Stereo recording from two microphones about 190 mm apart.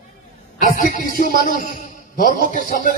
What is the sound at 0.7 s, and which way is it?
Speech, 45° left (ahead or behind).